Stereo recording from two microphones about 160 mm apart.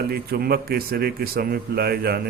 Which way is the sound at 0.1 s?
75° right (ahead or behind).